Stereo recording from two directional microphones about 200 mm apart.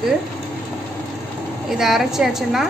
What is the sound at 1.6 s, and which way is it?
A woman's voice, centre (ahead or behind).